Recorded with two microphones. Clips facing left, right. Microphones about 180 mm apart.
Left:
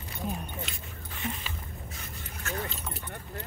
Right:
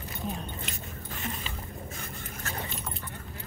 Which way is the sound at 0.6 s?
45° right (ahead or behind).